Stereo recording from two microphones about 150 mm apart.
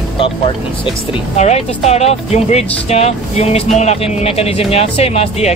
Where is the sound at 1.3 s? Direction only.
45° left (ahead or behind).